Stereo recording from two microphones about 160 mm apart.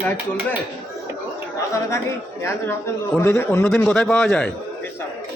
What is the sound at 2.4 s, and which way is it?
A man's voice, 15° left (ahead or behind).